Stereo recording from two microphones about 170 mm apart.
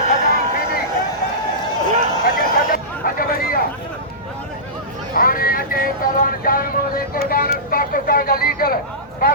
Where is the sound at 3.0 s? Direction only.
60° left (ahead or behind).